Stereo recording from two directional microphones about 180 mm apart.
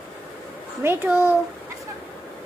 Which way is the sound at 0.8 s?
10° right (ahead or behind).